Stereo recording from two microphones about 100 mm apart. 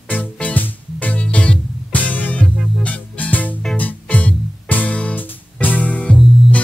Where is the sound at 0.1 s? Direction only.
15° left (ahead or behind).